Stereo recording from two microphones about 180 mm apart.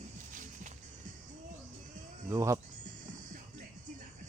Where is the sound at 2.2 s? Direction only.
15° right (ahead or behind).